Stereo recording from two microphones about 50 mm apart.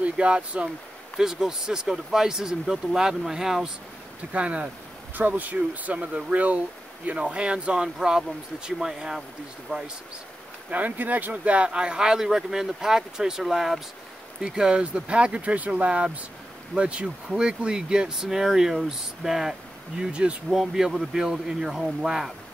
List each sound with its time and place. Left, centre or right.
0.0 s speech: right
1.1 s speech: centre
4.3 s speech: right
5.1 s speech: right; by 9.2 s centre
9.7 s speech: left
10.7 s speech: right; by 19.5 s centre
20.0 s speech: right
20.4 s speech: centre